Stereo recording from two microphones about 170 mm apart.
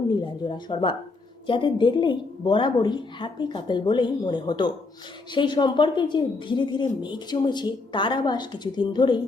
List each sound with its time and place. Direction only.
0.1 s a woman's voice: 25° left (ahead or behind)